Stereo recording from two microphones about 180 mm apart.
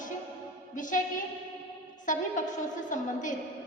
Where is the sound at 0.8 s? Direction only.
45° left (ahead or behind).